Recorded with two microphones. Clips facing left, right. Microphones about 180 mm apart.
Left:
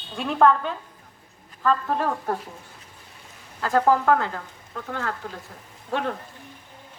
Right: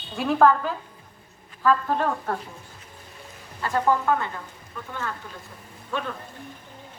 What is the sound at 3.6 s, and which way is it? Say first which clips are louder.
A woman's voice: left 3 dB; 90° left.